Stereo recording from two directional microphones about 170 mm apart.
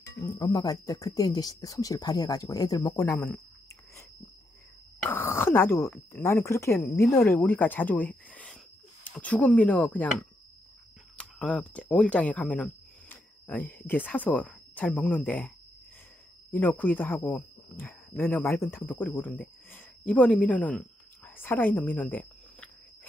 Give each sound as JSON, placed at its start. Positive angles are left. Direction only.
{"t": 0.2, "sound": "speech", "side_deg": 25}
{"t": 5.0, "sound": "speech", "side_deg": 10}
{"t": 11.1, "sound": "speech", "side_deg": 5}
{"t": 16.5, "sound": "speech", "side_deg": 10}
{"t": 21.4, "sound": "a sound", "side_deg": 10}